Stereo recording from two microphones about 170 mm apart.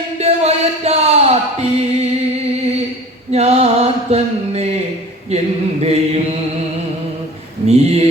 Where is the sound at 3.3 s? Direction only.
40° right (ahead or behind).